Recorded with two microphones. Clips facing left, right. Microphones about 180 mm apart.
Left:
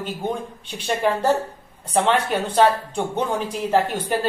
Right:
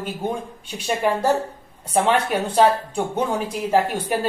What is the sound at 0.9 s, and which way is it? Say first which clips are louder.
Speech: even; 10° right (ahead or behind).